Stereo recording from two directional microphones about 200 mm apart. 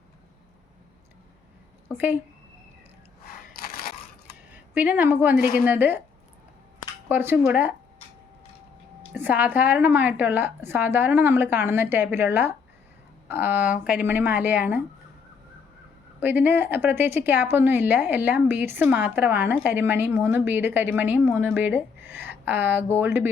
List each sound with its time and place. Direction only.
2.0 s a woman's voice: 10° right (ahead or behind)
3.6 s crushing: 50° left (ahead or behind)
4.5 s a woman's voice: 10° right (ahead or behind)
5.3 s a woman's voice: 45° left (ahead or behind)
5.6 s a woman's voice: 10° right (ahead or behind)
7.1 s a woman's voice: 10° right (ahead or behind)
9.1 s a woman's voice: 10° right (ahead or behind)
16.2 s a woman's voice: 10° right (ahead or behind)